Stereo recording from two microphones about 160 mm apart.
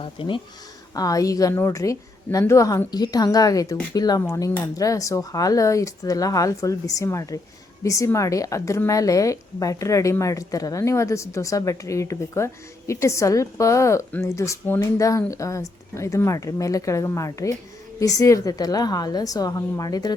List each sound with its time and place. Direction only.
0.0 s speech: 35° left (ahead or behind)
0.9 s a woman's voice: 20° left (ahead or behind)